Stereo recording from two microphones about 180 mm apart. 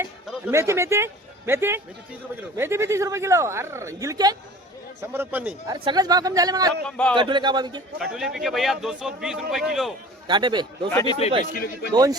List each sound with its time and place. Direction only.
0.5 s speech: 15° right (ahead or behind)
5.6 s speech: 25° right (ahead or behind)
6.8 s speech: 5° left (ahead or behind)
7.2 s speech: 25° right (ahead or behind)
7.9 s speech: centre (ahead or behind)
10.2 s speech: 25° right (ahead or behind)
11.0 s speech: 25° left (ahead or behind)
11.5 s a man's voice: 55° left (ahead or behind)